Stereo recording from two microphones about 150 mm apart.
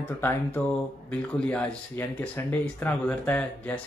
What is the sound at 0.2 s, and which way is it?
Speech, 15° left (ahead or behind).